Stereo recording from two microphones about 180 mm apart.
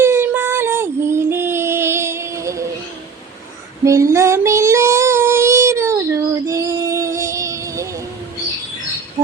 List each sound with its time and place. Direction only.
0.0 s child singing: 15° right (ahead or behind)
3.8 s child singing: 15° right (ahead or behind)